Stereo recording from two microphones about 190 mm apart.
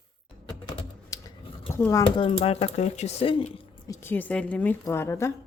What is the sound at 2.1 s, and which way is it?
Speech, 30° left (ahead or behind).